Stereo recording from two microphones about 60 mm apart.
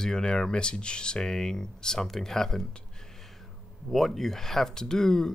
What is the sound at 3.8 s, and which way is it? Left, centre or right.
Speech, centre.